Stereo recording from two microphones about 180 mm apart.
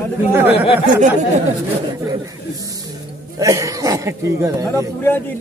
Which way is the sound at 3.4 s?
15° right (ahead or behind).